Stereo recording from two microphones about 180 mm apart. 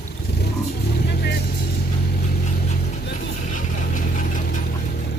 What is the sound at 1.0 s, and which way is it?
Vehicle, 65° left (ahead or behind).